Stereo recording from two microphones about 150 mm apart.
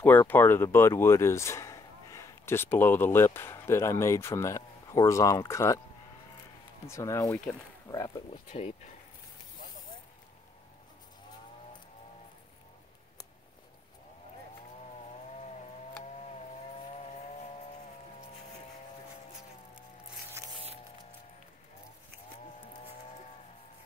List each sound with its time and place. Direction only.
0.0 s speech: 15° left (ahead or behind)
6.9 s speech: 20° left (ahead or behind)
8.5 s speech: 50° left (ahead or behind)
15.4 s a sound: 50° left (ahead or behind)
16.9 s vehicle: 45° left (ahead or behind)